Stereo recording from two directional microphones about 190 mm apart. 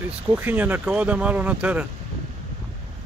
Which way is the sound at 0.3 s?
10° right (ahead or behind).